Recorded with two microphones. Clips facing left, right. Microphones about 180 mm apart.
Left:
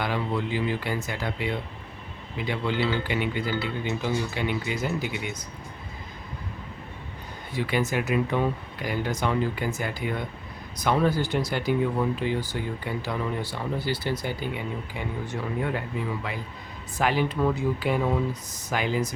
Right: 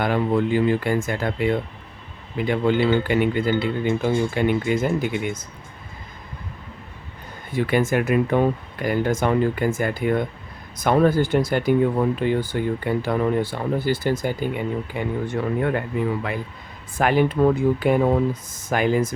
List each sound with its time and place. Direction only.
0.0 s speech: 50° right (ahead or behind)
7.5 s speech: 50° right (ahead or behind)
17.0 s speech: 50° right (ahead or behind)